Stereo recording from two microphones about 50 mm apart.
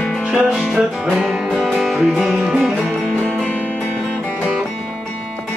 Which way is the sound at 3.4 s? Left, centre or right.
Left.